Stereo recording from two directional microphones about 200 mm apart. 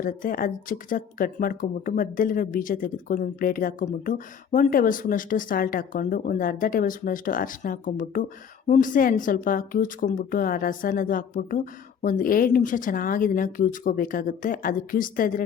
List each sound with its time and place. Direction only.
0.0 s speech: 45° left (ahead or behind)